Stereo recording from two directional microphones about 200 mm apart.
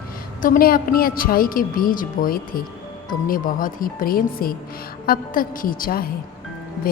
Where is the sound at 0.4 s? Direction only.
45° left (ahead or behind).